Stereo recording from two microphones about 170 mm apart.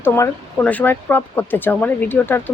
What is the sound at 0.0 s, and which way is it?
Speech, 10° left (ahead or behind).